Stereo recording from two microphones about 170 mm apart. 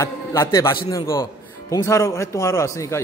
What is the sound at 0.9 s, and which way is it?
Speech, 30° left (ahead or behind).